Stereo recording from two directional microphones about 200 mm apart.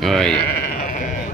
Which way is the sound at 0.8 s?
40° left (ahead or behind).